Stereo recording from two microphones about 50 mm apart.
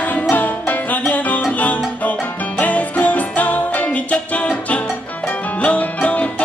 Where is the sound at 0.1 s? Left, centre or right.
Left.